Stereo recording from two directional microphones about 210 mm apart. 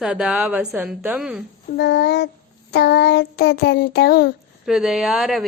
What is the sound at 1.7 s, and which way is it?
Child singing, 55° left (ahead or behind).